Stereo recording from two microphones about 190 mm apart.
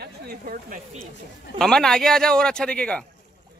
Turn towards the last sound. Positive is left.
turn(degrees=5)  # may be behind; listen again after turning